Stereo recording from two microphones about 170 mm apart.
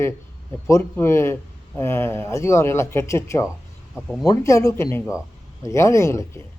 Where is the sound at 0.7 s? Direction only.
15° left (ahead or behind).